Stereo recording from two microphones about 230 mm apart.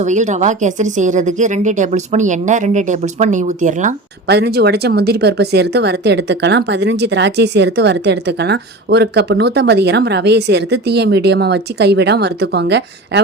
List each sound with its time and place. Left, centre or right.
0.0 s a woman's voice: right
4.3 s speech: right